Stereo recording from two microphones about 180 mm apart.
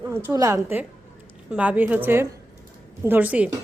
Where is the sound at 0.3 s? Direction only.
15° right (ahead or behind).